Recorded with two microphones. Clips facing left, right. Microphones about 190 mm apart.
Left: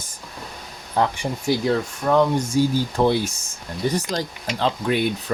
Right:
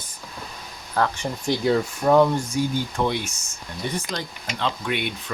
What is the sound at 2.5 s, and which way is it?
Speech, 30° left (ahead or behind).